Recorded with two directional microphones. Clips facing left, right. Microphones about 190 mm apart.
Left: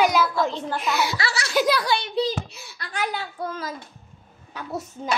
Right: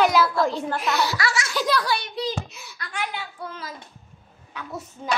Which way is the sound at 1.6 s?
10° left (ahead or behind).